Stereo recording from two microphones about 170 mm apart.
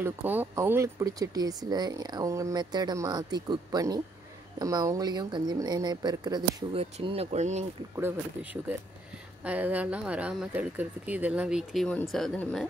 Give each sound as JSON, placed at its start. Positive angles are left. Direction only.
{"t": 0.0, "sound": "speech", "side_deg": -10}
{"t": 6.8, "sound": "speech", "side_deg": -35}
{"t": 7.9, "sound": "speech", "side_deg": -15}